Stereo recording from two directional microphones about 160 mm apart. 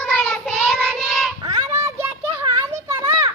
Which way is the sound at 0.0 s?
10° left (ahead or behind).